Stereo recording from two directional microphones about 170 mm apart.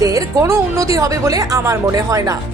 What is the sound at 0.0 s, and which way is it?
A woman's voice, 20° right (ahead or behind).